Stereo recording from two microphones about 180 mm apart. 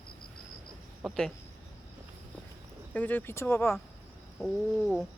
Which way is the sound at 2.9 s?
10° left (ahead or behind).